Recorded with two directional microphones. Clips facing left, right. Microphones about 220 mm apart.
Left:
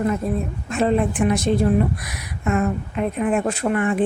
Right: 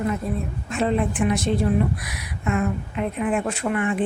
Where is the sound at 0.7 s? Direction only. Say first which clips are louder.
Left 3 dB; 45° left (ahead or behind).